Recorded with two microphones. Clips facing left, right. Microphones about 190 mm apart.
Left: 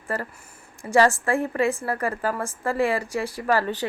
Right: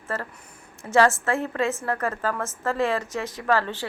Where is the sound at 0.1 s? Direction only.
15° left (ahead or behind).